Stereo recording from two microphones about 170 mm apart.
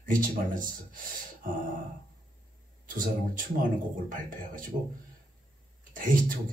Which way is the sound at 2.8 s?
55° right (ahead or behind).